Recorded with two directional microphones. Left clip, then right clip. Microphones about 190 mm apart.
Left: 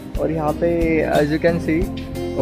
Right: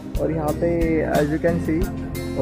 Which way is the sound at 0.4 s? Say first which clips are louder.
Left 3 dB; 15° left (ahead or behind).